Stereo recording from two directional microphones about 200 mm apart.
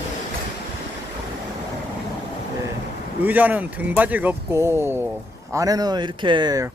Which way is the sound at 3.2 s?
10° right (ahead or behind).